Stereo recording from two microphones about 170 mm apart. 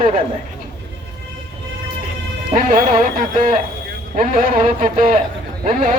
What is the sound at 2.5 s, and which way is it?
Speech, 55° right (ahead or behind).